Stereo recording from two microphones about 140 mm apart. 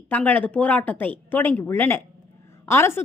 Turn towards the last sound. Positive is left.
turn(degrees=15)  # may be behind; listen again after turning